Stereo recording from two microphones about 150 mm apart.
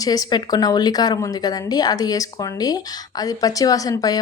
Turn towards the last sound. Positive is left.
turn(degrees=25)  # may be behind; listen again after turning